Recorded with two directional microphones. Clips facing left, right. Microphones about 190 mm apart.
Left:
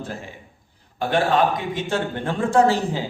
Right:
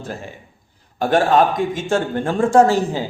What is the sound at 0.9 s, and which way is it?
A man's voice, 45° right (ahead or behind).